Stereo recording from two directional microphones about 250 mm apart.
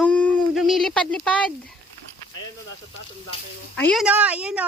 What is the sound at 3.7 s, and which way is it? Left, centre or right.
Speech, centre.